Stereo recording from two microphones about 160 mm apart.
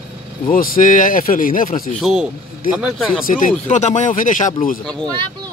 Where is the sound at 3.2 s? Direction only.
55° left (ahead or behind).